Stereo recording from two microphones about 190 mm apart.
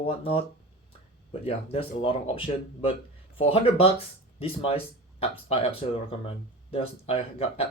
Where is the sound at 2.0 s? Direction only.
30° left (ahead or behind).